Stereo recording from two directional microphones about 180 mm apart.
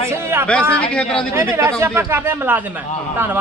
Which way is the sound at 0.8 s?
5° left (ahead or behind).